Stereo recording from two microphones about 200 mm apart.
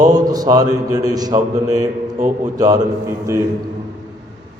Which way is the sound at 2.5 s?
20° right (ahead or behind).